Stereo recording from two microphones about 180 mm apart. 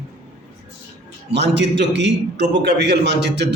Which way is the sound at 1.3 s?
75° right (ahead or behind).